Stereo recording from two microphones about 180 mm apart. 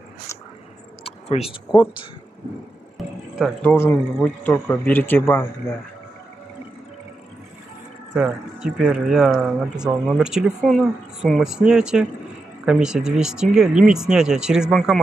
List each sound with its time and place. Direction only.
1.0 s speech: 35° left (ahead or behind)
3.6 s speech: 15° left (ahead or behind)
8.1 s speech: 5° right (ahead or behind)